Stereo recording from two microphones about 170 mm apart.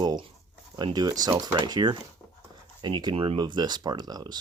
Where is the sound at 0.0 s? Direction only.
25° right (ahead or behind).